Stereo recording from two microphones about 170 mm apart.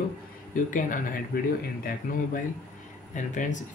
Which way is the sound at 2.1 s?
55° left (ahead or behind).